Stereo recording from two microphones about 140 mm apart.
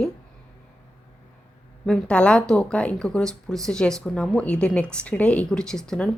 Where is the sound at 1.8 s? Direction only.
5° left (ahead or behind).